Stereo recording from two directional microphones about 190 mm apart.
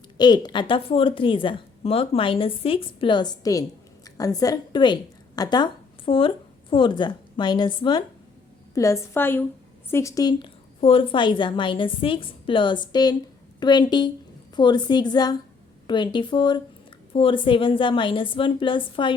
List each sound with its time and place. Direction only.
0.2 s a woman's voice: 20° left (ahead or behind)